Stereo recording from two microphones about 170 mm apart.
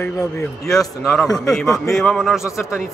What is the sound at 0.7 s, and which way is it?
A man's voice, centre (ahead or behind).